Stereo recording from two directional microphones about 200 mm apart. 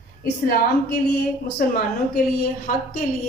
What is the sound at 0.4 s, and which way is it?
A woman's voice, 50° left (ahead or behind).